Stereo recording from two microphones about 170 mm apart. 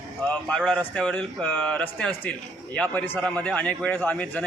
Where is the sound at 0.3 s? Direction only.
5° left (ahead or behind).